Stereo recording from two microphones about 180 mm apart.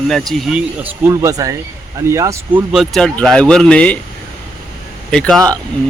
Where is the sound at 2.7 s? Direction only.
Centre (ahead or behind).